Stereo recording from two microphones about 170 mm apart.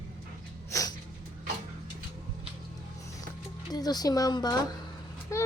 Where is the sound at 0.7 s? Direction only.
20° left (ahead or behind).